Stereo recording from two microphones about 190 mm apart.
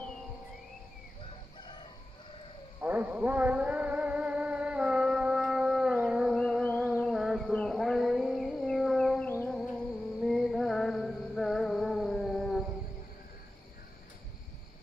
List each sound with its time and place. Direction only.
1.6 s chicken: 25° left (ahead or behind)
2.8 s music: 10° right (ahead or behind)
7.0 s a sound: centre (ahead or behind)
9.3 s music: 10° left (ahead or behind)